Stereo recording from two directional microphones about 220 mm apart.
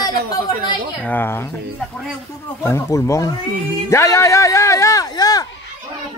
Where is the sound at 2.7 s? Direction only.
15° left (ahead or behind).